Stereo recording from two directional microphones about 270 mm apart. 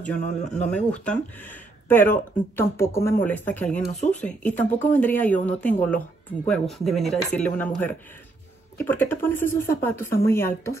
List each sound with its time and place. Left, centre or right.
0.0 s speech: centre
1.9 s speech: centre
3.9 s speech: left
4.2 s speech: centre